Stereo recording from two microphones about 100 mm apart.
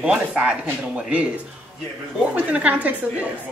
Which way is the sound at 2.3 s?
15° right (ahead or behind).